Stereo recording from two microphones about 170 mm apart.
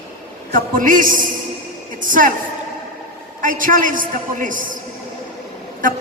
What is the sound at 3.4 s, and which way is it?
A woman's voice, 50° right (ahead or behind).